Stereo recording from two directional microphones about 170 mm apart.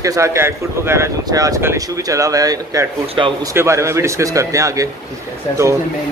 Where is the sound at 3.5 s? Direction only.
15° right (ahead or behind).